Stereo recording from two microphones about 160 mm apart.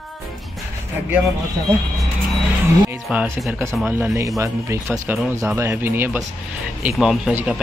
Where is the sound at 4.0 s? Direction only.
20° right (ahead or behind).